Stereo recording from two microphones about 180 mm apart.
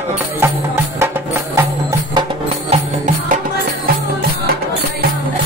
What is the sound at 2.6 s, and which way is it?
Music, 40° right (ahead or behind).